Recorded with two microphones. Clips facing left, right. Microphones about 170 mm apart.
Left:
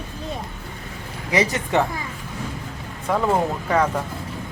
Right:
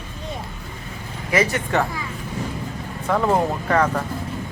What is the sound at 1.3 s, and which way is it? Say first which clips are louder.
Speech: even; 20° left (ahead or behind).